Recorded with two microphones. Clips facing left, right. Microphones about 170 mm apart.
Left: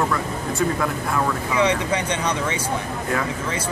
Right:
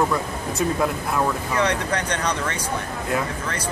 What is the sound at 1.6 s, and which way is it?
Speech, 10° left (ahead or behind).